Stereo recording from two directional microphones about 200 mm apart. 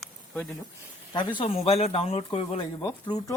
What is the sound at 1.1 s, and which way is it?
Speech, 25° left (ahead or behind).